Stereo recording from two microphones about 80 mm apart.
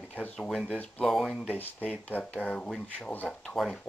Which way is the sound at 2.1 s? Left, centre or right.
Centre.